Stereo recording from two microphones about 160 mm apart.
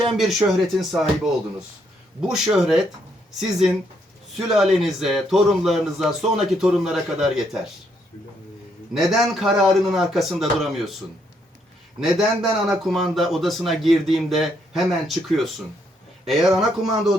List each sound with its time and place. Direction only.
0.2 s speech: centre (ahead or behind)
4.4 s speech: centre (ahead or behind)
8.9 s speech: centre (ahead or behind)
11.9 s speech: centre (ahead or behind)